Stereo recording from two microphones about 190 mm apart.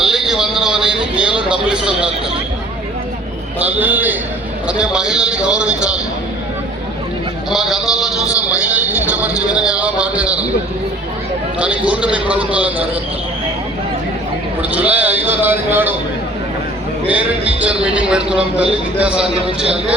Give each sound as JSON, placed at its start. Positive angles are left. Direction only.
{"t": 0.0, "sound": "a sound", "side_deg": 0}
{"t": 1.5, "sound": "a man's voice", "side_deg": -5}
{"t": 3.7, "sound": "a man's voice", "side_deg": -10}
{"t": 7.5, "sound": "a man's voice", "side_deg": 0}
{"t": 9.3, "sound": "music", "side_deg": 20}
{"t": 9.6, "sound": "a man's voice", "side_deg": -5}
{"t": 11.6, "sound": "a man's voice", "side_deg": -5}
{"t": 14.7, "sound": "a man's voice", "side_deg": -5}
{"t": 17.1, "sound": "a man's voice", "side_deg": -5}